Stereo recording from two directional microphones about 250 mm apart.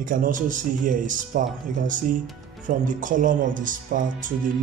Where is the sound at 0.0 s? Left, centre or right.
Right.